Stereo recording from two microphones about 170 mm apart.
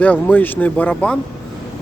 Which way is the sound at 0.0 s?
10° left (ahead or behind).